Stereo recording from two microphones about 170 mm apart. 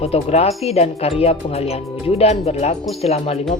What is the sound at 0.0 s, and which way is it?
Speech, 35° left (ahead or behind).